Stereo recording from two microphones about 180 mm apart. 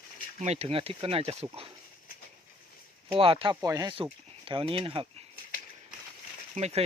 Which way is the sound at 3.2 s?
30° right (ahead or behind).